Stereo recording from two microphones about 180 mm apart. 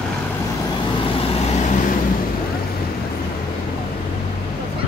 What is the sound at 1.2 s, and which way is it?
Vehicle, 35° left (ahead or behind).